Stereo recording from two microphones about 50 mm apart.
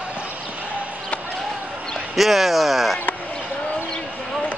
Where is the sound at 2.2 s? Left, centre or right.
Centre.